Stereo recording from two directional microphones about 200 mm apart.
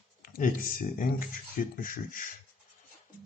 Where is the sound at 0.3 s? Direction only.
45° left (ahead or behind).